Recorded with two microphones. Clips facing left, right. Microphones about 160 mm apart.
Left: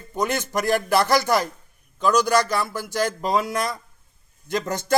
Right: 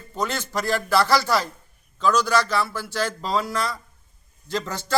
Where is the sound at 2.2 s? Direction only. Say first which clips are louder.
Left 2 dB; 45° left (ahead or behind).